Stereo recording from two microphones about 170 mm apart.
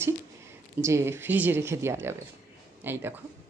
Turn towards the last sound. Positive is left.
turn(degrees=-10)  # may be behind; listen again after turning